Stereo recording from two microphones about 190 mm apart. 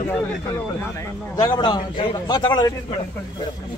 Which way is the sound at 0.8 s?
20° left (ahead or behind).